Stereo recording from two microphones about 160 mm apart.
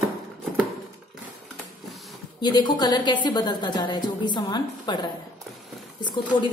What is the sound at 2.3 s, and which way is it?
A woman's voice, 25° left (ahead or behind).